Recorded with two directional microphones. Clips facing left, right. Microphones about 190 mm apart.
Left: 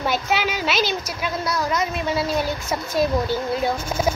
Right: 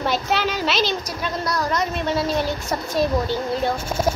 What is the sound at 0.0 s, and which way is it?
A woman's voice, 5° left (ahead or behind).